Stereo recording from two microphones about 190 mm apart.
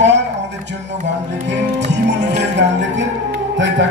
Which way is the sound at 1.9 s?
65° right (ahead or behind).